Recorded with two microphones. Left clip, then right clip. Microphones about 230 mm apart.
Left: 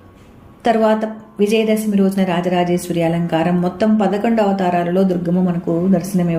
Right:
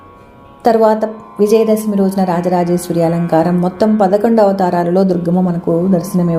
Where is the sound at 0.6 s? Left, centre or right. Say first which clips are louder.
Right 4 dB; right.